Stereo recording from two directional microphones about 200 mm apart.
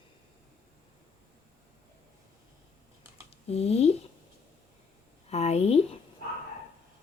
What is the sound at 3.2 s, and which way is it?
Speech, 30° left (ahead or behind).